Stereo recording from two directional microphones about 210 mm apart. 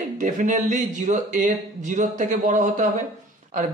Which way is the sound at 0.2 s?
35° right (ahead or behind).